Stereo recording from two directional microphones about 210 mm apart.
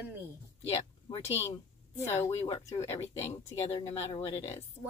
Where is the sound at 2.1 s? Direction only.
15° left (ahead or behind).